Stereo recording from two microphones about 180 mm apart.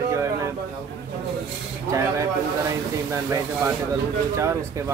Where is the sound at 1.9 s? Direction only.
15° right (ahead or behind).